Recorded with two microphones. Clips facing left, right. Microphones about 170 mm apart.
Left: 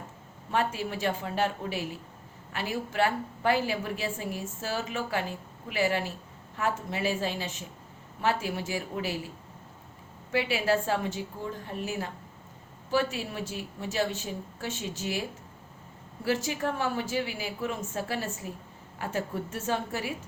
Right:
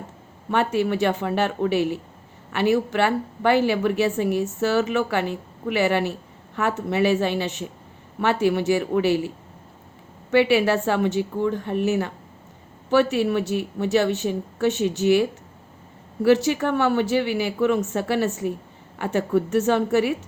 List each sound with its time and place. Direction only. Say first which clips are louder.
0.5 s a woman's voice: right 8 dB; 70° right (ahead or behind)
10.3 s a woman's voice: right 9 dB; 70° right (ahead or behind)